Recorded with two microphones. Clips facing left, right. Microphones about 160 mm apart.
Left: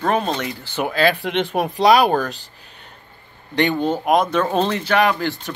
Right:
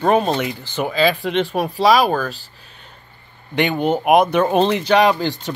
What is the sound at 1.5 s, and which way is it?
Speech, 20° left (ahead or behind).